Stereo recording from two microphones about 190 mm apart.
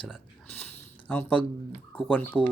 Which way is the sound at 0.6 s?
10° left (ahead or behind).